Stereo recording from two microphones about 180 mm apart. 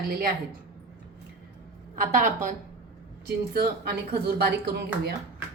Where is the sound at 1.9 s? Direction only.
50° right (ahead or behind).